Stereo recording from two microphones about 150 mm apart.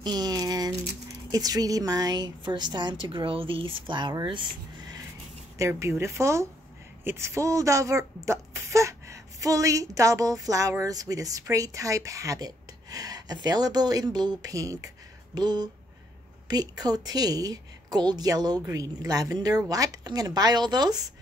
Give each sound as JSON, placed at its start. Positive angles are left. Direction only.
{"t": 0.0, "sound": "a sound", "side_deg": -30}
{"t": 1.3, "sound": "a woman's voice", "side_deg": -25}
{"t": 5.6, "sound": "speech", "side_deg": -20}